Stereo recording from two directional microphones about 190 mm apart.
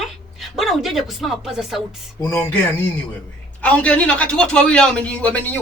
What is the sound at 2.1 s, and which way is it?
Speech, 15° left (ahead or behind).